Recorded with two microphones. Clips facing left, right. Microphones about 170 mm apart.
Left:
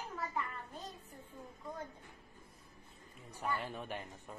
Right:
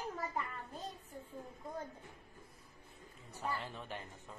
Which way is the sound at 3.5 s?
15° left (ahead or behind).